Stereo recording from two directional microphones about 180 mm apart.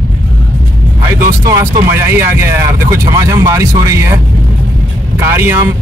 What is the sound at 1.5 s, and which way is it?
Speech, 15° right (ahead or behind).